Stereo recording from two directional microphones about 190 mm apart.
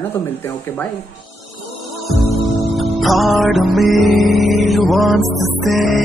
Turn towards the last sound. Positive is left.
turn(degrees=0)  # may be behind; listen again after turning